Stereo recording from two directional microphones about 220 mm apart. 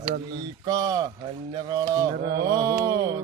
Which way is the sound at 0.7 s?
15° right (ahead or behind).